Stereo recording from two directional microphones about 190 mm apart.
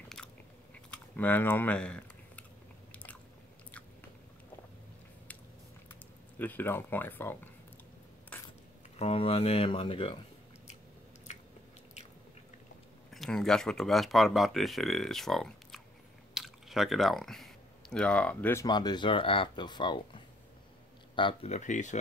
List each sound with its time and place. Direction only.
0.2 s biting: 5° left (ahead or behind)
0.8 s chewing: 5° left (ahead or behind)
2.9 s biting: 10° left (ahead or behind)
5.9 s speech: 10° left (ahead or behind)
8.9 s speech: 30° left (ahead or behind)
13.1 s speech: centre (ahead or behind); by 21.9 s 40° left (ahead or behind)